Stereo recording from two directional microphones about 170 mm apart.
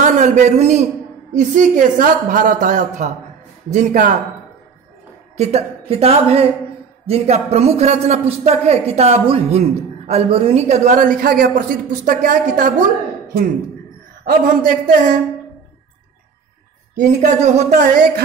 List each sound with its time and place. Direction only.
0.0 s a man's voice: 45° right (ahead or behind)
5.4 s a man's voice: 40° right (ahead or behind)
14.2 s speech: 60° right (ahead or behind)
17.0 s a woman's voice: 45° right (ahead or behind)